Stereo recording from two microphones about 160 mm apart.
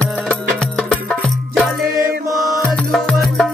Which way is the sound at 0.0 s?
5° left (ahead or behind).